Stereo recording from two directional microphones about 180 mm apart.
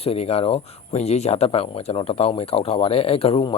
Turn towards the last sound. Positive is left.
turn(degrees=30)  # may be behind; listen again after turning